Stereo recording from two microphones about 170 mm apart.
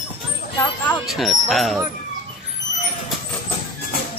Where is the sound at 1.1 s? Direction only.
Centre (ahead or behind).